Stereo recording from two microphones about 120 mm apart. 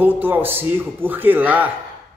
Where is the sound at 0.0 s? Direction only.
15° right (ahead or behind).